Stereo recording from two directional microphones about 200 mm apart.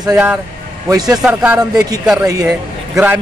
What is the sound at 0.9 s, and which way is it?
Speech, 20° right (ahead or behind).